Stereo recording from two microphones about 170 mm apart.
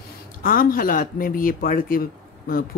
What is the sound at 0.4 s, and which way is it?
Speech, 55° left (ahead or behind).